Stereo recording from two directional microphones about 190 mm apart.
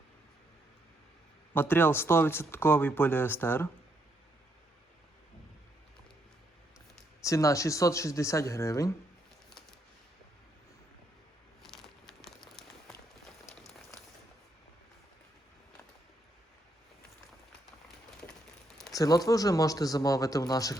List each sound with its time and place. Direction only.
1.5 s speech: 10° left (ahead or behind)
7.3 s speech: 15° left (ahead or behind)
11.6 s crumpling: centre (ahead or behind)
18.9 s speech: 20° left (ahead or behind)